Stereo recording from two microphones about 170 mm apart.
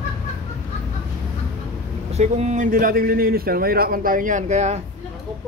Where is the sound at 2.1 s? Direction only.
40° right (ahead or behind).